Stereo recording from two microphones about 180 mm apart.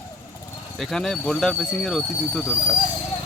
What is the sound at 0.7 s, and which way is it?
Speech, centre (ahead or behind).